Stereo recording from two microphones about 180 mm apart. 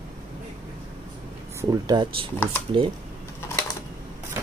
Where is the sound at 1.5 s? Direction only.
20° right (ahead or behind).